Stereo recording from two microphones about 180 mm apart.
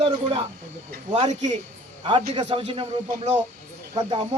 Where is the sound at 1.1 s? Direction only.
40° right (ahead or behind).